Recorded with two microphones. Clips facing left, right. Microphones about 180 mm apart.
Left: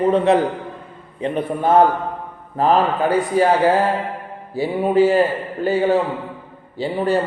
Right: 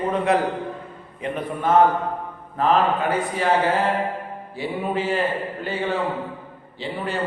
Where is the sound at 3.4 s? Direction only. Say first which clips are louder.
Left 10 dB; 40° left (ahead or behind).